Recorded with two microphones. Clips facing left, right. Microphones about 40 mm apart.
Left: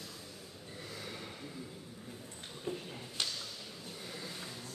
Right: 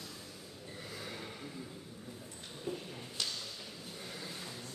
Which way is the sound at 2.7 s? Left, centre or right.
Left.